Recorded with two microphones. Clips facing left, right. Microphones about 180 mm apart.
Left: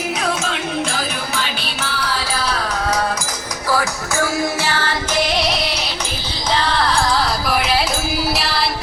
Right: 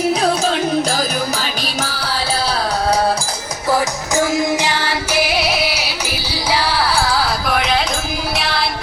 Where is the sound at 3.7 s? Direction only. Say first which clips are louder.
Right 3 dB; 20° right (ahead or behind).